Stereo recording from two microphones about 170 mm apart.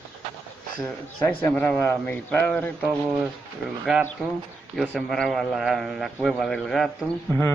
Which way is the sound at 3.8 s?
5° right (ahead or behind).